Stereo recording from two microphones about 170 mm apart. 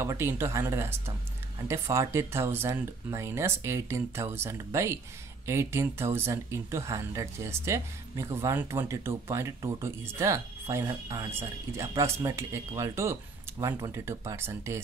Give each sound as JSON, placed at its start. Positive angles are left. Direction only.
{"t": 0.0, "sound": "speech", "side_deg": -15}